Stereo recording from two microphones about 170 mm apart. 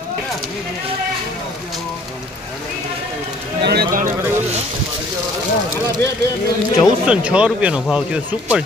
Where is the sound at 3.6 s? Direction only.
75° right (ahead or behind).